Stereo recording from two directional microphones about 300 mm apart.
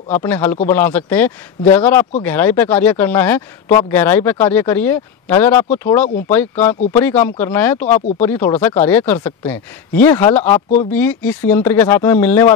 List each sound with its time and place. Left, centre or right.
0.1 s speech: centre
6.0 s speech: left
6.3 s speech: centre